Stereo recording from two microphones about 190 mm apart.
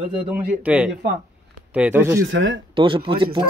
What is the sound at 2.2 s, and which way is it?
Speech, 85° right.